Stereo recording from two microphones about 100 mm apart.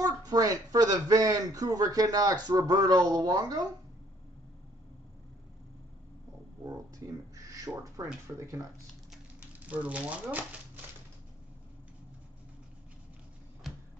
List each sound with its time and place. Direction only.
0.0 s a man's voice: 40° right (ahead or behind)
7.3 s a sound: 35° right (ahead or behind)
8.4 s a man's voice: 30° right (ahead or behind)
9.4 s speech: 15° right (ahead or behind)